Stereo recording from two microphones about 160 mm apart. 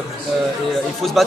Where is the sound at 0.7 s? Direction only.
Centre (ahead or behind).